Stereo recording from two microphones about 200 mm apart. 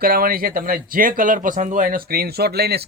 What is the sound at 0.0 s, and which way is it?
Speech, 45° right (ahead or behind).